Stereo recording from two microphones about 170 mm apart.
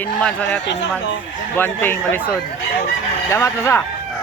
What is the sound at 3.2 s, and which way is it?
Speech, 15° left (ahead or behind).